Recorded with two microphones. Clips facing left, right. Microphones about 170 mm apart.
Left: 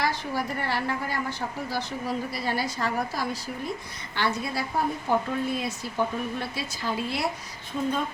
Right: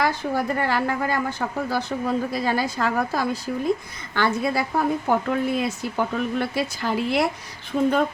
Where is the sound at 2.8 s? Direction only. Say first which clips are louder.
Right 5 dB; 80° right.